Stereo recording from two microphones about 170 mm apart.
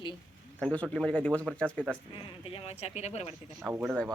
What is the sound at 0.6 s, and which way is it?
Speech, 5° left (ahead or behind).